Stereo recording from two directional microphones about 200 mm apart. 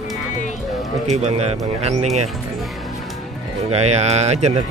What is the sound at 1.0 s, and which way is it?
Speech, 35° right (ahead or behind).